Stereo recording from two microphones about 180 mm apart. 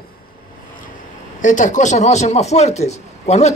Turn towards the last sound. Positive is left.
turn(degrees=40)  # may be behind; listen again after turning